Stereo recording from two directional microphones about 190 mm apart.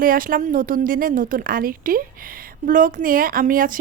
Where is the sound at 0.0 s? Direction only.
50° right (ahead or behind).